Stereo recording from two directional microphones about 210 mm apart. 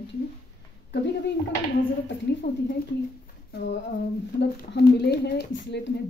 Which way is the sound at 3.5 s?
55° left (ahead or behind).